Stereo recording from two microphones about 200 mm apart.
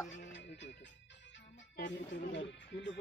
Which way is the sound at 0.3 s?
65° left (ahead or behind).